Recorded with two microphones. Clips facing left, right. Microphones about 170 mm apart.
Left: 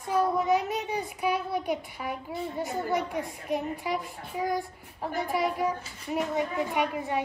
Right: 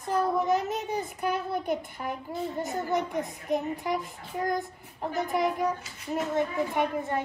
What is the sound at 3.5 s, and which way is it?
Speech, 5° left (ahead or behind).